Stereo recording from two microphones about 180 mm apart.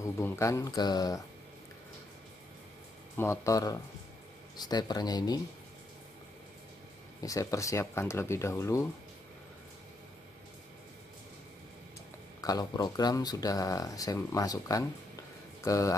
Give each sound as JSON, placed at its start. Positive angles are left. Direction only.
{"t": 0.0, "sound": "speech", "side_deg": 15}
{"t": 3.2, "sound": "speech", "side_deg": 15}
{"t": 7.2, "sound": "speech", "side_deg": 20}
{"t": 12.4, "sound": "speech", "side_deg": 20}